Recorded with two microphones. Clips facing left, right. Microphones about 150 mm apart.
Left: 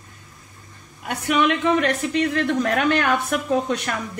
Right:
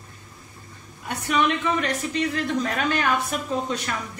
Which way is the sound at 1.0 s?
60° left (ahead or behind).